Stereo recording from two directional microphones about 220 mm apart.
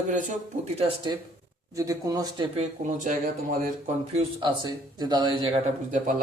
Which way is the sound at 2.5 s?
35° right (ahead or behind).